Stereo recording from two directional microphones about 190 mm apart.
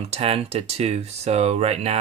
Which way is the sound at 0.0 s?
30° right (ahead or behind).